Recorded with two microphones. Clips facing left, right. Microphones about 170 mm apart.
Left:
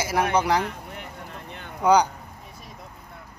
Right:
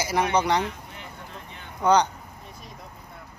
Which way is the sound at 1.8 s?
10° left (ahead or behind).